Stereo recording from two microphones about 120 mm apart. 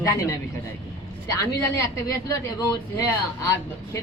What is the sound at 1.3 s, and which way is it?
Speech, 30° left (ahead or behind).